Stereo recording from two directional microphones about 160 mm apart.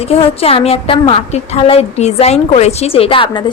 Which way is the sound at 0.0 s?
40° left (ahead or behind).